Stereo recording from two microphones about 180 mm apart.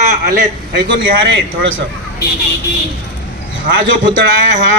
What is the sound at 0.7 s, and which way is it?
A man's voice, 85° right.